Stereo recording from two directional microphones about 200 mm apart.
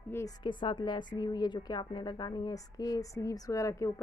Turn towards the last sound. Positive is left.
turn(degrees=15)  # may be behind; listen again after turning